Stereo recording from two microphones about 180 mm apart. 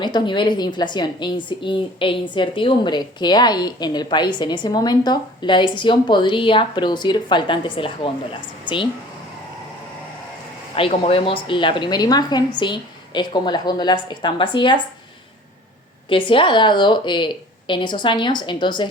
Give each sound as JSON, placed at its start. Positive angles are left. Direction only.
{"t": 0.0, "sound": "a woman's voice", "side_deg": 25}
{"t": 10.8, "sound": "a woman's voice", "side_deg": 30}
{"t": 16.0, "sound": "a woman's voice", "side_deg": 30}